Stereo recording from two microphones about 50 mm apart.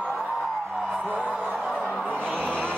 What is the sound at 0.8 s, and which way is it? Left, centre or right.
Music, centre.